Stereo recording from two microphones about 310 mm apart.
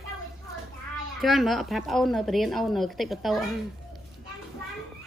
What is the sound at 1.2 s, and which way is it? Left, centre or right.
A woman's voice, centre.